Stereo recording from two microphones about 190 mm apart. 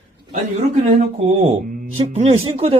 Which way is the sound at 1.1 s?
30° right (ahead or behind).